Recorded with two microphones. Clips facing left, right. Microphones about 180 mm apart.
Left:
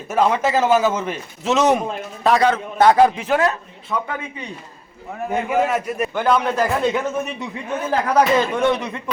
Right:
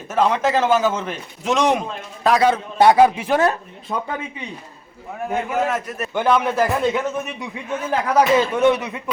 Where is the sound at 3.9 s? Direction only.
35° right (ahead or behind).